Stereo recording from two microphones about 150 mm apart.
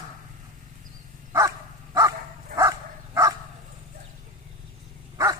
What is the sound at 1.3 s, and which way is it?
Dog, 20° right (ahead or behind).